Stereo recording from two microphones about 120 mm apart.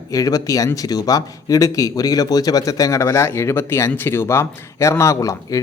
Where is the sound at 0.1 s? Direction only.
30° left (ahead or behind).